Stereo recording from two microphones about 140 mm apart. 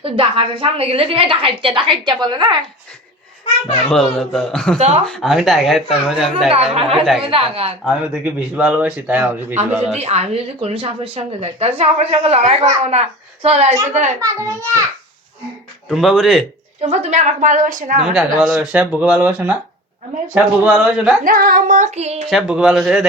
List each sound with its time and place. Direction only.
0.0 s a woman's voice: 40° right (ahead or behind)
3.8 s speech: 5° left (ahead or behind)
4.8 s speech: 50° right (ahead or behind)
5.0 s speech: centre (ahead or behind)
6.5 s a woman's voice: 50° right (ahead or behind)
7.9 s speech: 5° right (ahead or behind)
9.9 s a woman's voice: 50° right (ahead or behind)
14.2 s a child's voice: 25° right (ahead or behind)
15.9 s speech: centre (ahead or behind)
16.8 s a woman's voice: 50° right (ahead or behind); by 17.9 s 65° right (ahead or behind)
18.0 s speech: 5° right (ahead or behind)
21.2 s female singing: 85° right; by 22.2 s 50° right (ahead or behind)
22.3 s speech: centre (ahead or behind)